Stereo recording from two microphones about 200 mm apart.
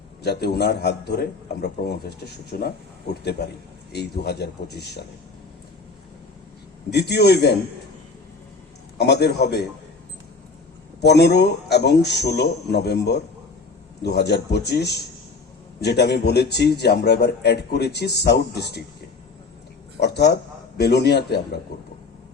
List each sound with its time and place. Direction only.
0.2 s speech: 55° left (ahead or behind)
3.9 s speech: 55° left (ahead or behind)
6.9 s speech: 55° left (ahead or behind)
9.0 s speech: 55° left (ahead or behind)
11.0 s speech: 55° left (ahead or behind)
20.0 s speech: 55° left (ahead or behind)